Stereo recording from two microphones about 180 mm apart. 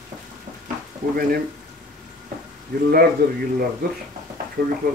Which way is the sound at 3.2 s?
60° right (ahead or behind).